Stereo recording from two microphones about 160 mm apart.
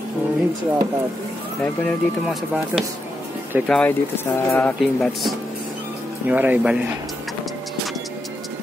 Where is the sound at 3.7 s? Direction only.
10° left (ahead or behind).